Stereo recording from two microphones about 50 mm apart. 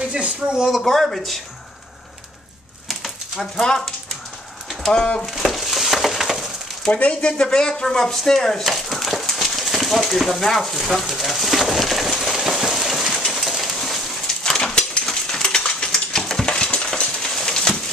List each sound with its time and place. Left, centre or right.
0.1 s speech: right
0.8 s speech: centre
3.3 s speech: centre
4.8 s speech: centre
5.3 s frying: centre
6.9 s speech: left; by 11.0 s centre
11.0 s a sound: centre
13.2 s bird: centre
14.5 s a sound: centre
16.4 s a sound: centre